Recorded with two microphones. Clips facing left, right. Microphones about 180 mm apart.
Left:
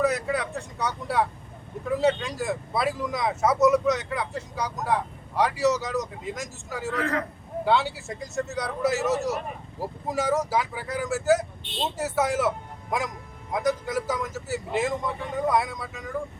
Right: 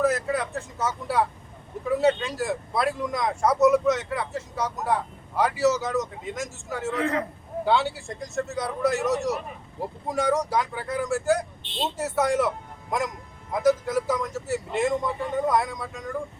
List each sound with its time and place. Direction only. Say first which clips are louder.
0.0 s speech: right 1 dB; centre (ahead or behind)
6.9 s a man's voice: right 1 dB; 20° right (ahead or behind)
7.6 s speech: even; centre (ahead or behind)